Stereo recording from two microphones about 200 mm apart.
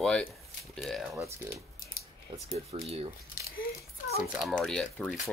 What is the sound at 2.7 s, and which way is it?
Speech, 30° right (ahead or behind).